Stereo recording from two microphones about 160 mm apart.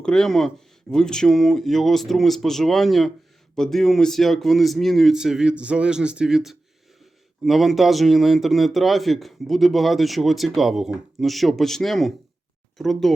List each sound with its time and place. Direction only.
0.0 s speech: 5° left (ahead or behind)